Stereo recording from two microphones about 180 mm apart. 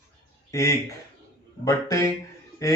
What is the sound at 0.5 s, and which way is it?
A man's voice, 15° left (ahead or behind).